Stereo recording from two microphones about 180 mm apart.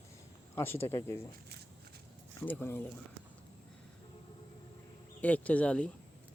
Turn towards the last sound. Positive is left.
turn(degrees=5)  # may be behind; listen again after turning